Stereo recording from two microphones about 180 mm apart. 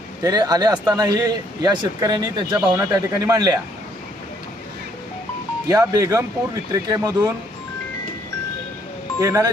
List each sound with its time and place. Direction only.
0.2 s speech: 20° right (ahead or behind)
5.6 s speech: 20° right (ahead or behind)
9.2 s speech: 20° right (ahead or behind)